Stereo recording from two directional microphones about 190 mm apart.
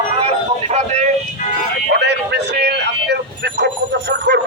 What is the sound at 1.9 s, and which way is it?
Speech, 60° right (ahead or behind).